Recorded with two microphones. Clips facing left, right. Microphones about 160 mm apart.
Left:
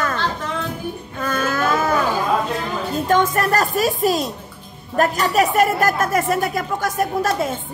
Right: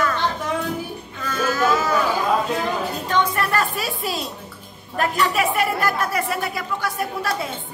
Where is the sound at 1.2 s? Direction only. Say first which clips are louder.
Even; 55° left (ahead or behind).